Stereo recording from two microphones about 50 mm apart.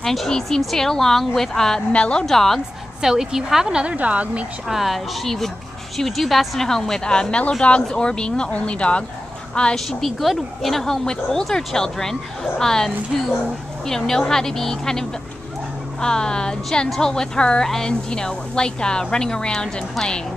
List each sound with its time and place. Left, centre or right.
0.0 s speech: centre
1.9 s speech: left
2.2 s speech: centre
3.0 s a woman's voice: centre
3.7 s speech: right
4.6 s speech: centre; by 9.0 s left
9.8 s speech: centre